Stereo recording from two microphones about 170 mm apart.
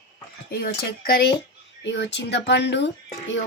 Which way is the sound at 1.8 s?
90° left.